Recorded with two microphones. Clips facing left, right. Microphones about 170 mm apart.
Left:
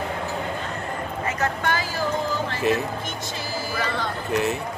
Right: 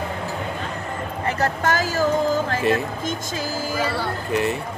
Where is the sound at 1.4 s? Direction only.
40° right (ahead or behind).